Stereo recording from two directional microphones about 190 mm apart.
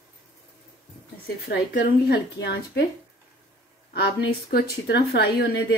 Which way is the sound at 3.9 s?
55° left (ahead or behind).